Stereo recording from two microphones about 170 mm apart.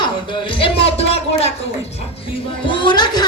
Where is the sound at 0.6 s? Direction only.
35° left (ahead or behind).